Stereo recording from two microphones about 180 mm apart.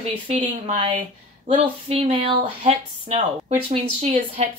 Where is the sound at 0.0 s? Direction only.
40° right (ahead or behind).